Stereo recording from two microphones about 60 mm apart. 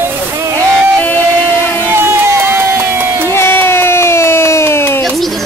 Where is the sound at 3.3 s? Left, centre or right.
Left.